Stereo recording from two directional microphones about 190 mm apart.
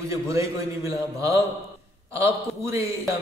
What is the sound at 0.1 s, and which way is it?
A man's voice, 15° right (ahead or behind).